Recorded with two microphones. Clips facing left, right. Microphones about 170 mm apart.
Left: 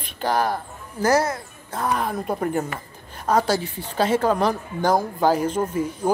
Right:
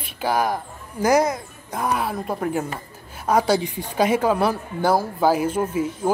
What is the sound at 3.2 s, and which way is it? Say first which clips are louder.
A woman's voice: right 2 dB; 10° right (ahead or behind).